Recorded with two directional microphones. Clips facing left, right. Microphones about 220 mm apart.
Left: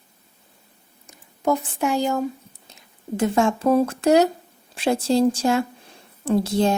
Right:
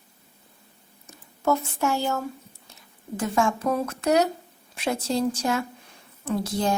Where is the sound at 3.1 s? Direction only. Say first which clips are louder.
Left 4 dB; 25° left (ahead or behind).